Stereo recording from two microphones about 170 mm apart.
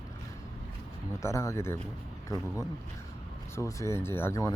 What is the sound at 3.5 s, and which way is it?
Speech, 15° left (ahead or behind).